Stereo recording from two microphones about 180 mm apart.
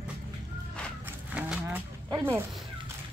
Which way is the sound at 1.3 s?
5° right (ahead or behind).